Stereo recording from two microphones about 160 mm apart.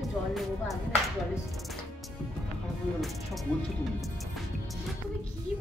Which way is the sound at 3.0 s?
Centre (ahead or behind).